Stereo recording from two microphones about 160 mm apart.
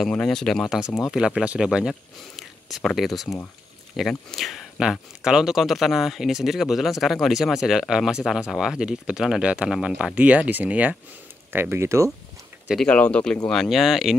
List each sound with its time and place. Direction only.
0.0 s speech: 5° left (ahead or behind)
0.8 s speech: 20° left (ahead or behind)
1.1 s speech: 5° right (ahead or behind)
12.6 s speech: 5° left (ahead or behind)